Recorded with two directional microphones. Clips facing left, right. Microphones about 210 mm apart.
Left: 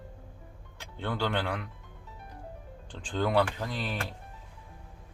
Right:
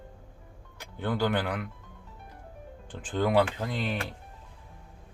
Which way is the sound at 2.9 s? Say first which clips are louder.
Right 2 dB; 10° right (ahead or behind).